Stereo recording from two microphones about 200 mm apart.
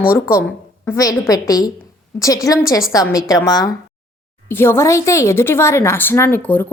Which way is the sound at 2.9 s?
15° left (ahead or behind).